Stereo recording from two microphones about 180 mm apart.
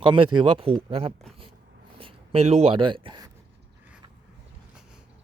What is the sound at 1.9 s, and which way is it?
Writing, 30° right (ahead or behind).